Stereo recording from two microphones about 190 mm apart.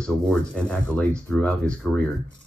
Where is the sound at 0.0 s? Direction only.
5° left (ahead or behind).